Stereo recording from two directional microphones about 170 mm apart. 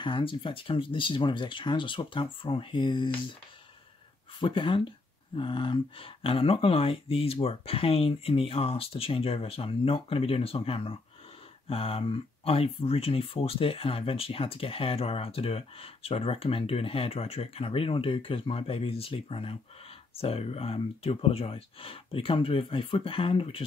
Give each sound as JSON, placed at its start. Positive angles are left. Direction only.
{"t": 0.0, "sound": "speech", "side_deg": 30}
{"t": 4.4, "sound": "speech", "side_deg": 30}